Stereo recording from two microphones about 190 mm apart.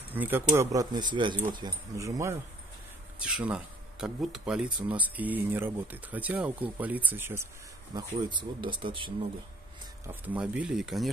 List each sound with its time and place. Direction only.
0.1 s speech: 10° right (ahead or behind)
3.2 s speech: 5° right (ahead or behind)
7.9 s speech: 25° right (ahead or behind)
10.0 s speech: 10° right (ahead or behind)